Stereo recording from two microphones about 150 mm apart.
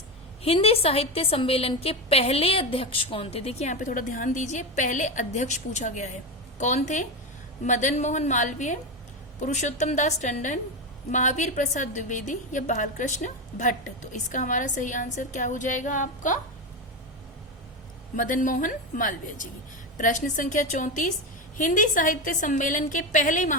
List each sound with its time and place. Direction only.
0.4 s a woman's voice: 40° left (ahead or behind); by 16.4 s 60° left (ahead or behind)
18.2 s a woman's voice: 60° left (ahead or behind)